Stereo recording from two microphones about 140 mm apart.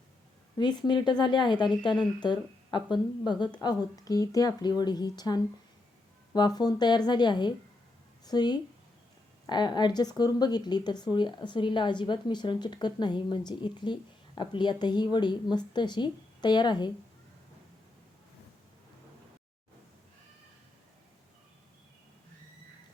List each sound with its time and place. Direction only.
0.5 s a woman's voice: 30° left (ahead or behind)